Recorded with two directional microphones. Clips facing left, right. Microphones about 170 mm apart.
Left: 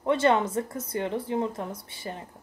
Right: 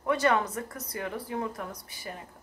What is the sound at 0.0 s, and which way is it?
Speech, 25° left (ahead or behind).